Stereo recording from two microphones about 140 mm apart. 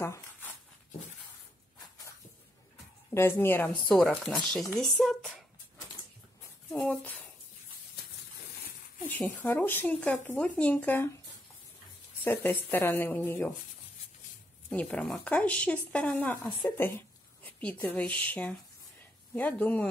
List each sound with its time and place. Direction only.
3.2 s speech: 15° left (ahead or behind)
6.7 s a sound: 5° left (ahead or behind)
9.1 s speech: 15° left (ahead or behind)
12.3 s speech: 15° left (ahead or behind)
14.7 s a woman's voice: 10° left (ahead or behind)